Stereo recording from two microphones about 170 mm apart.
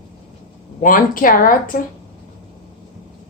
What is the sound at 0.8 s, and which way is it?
Speech, 55° left (ahead or behind).